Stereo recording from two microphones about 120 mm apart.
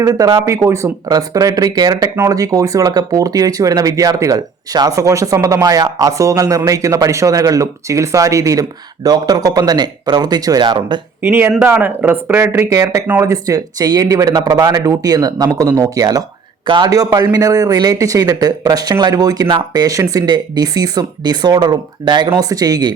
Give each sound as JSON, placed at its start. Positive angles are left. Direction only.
{"t": 0.0, "sound": "a man's voice", "side_deg": -30}
{"t": 11.2, "sound": "a man's voice", "side_deg": -20}